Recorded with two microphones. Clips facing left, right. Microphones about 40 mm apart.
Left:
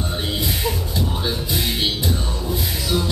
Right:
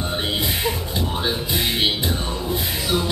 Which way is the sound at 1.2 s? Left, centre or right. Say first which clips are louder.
Right 1 dB; right.